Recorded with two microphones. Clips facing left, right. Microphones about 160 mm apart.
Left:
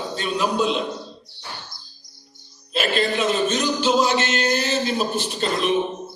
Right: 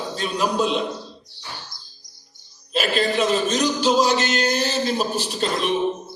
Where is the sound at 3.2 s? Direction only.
40° right (ahead or behind).